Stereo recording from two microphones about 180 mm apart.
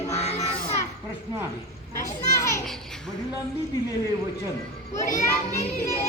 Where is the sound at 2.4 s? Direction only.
20° left (ahead or behind).